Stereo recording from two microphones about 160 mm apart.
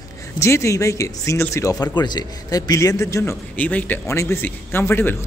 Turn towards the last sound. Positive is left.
turn(degrees=15)  # may be behind; listen again after turning